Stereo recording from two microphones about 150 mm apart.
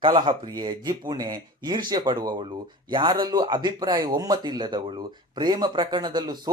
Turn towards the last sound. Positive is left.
turn(degrees=-30)  # may be behind; listen again after turning